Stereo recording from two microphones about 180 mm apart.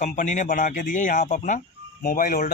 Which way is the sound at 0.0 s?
40° left (ahead or behind).